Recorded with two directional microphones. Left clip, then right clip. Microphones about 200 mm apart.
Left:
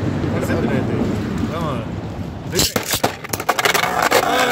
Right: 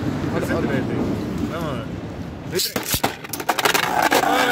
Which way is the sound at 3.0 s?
15° left (ahead or behind).